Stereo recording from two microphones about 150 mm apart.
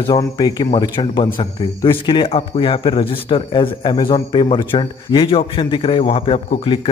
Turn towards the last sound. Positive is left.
turn(degrees=35)  # may be behind; listen again after turning